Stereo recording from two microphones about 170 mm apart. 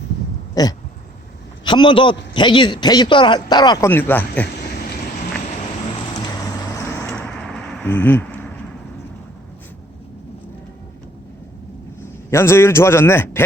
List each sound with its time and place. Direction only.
0.6 s a man's voice: 20° left (ahead or behind)
3.8 s a man's voice: 15° left (ahead or behind)
6.7 s a sound: 15° left (ahead or behind)
12.3 s a man's voice: 15° left (ahead or behind)